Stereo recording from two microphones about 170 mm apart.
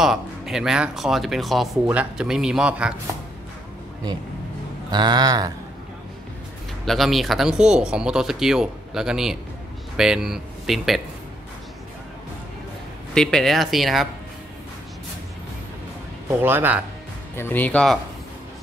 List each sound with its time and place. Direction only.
0.0 s speech: 5° right (ahead or behind)
4.9 s speech: 25° right (ahead or behind)
6.9 s speech: centre (ahead or behind)
13.1 s speech: 5° left (ahead or behind)
16.3 s speech: 10° right (ahead or behind)
17.4 s speech: 10° left (ahead or behind)